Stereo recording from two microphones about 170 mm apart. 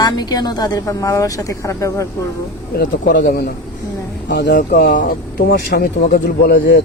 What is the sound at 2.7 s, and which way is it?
Speech, 70° left (ahead or behind).